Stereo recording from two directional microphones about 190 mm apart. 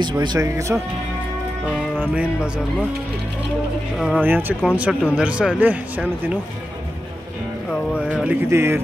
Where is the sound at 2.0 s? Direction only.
5° right (ahead or behind).